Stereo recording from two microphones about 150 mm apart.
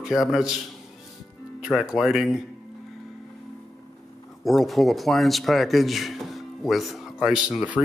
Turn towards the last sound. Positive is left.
turn(degrees=-5)  # may be behind; listen again after turning